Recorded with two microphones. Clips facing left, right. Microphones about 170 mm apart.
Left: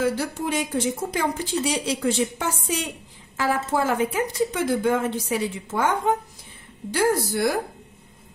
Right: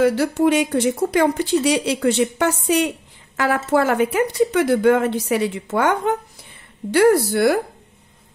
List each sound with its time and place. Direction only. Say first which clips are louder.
0.0 s speech: right 8 dB; 70° right (ahead or behind)